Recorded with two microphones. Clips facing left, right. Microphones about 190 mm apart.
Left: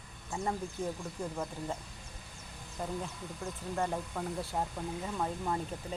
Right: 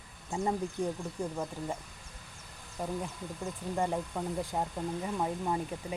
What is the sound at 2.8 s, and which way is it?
Speech, 10° right (ahead or behind).